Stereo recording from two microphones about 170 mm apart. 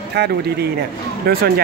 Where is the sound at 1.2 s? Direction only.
65° right (ahead or behind).